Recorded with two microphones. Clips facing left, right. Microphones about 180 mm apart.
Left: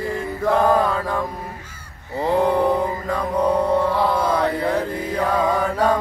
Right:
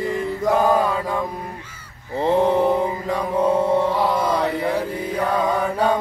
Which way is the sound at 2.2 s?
20° right (ahead or behind).